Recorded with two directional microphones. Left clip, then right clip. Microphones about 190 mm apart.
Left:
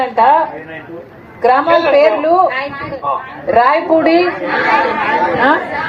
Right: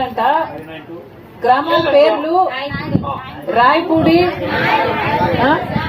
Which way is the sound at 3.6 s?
50° right (ahead or behind).